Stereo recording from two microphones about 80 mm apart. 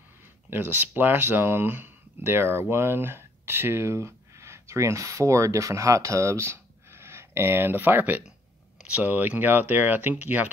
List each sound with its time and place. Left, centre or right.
0.5 s speech: right